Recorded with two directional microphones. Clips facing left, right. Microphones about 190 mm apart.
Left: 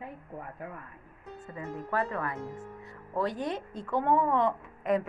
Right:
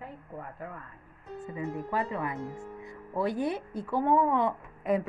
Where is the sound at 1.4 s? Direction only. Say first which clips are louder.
Right 4 dB; 15° right (ahead or behind).